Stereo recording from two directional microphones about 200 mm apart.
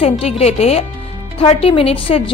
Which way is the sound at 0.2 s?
30° left (ahead or behind).